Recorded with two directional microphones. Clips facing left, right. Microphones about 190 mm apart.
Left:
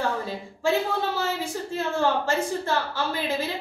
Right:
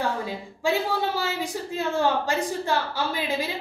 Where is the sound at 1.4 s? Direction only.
15° right (ahead or behind).